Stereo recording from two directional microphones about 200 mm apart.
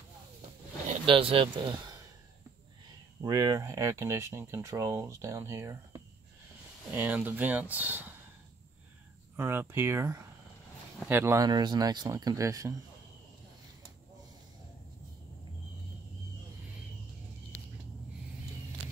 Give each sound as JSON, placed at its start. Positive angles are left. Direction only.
{"t": 0.8, "sound": "speech", "side_deg": -25}
{"t": 3.2, "sound": "speech", "side_deg": -15}
{"t": 9.4, "sound": "speech", "side_deg": -10}